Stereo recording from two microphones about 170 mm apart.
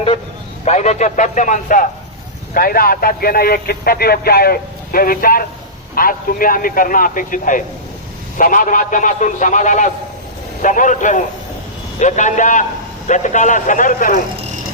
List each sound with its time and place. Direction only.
0.6 s a man's voice: 40° left (ahead or behind)